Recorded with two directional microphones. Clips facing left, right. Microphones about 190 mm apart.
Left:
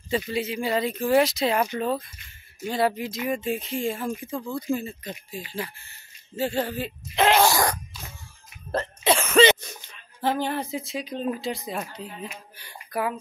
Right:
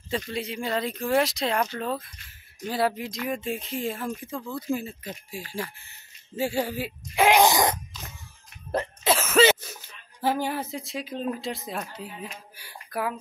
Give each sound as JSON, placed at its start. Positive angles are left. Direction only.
{"t": 0.1, "sound": "speech", "side_deg": 5}
{"t": 9.0, "sound": "speech", "side_deg": -5}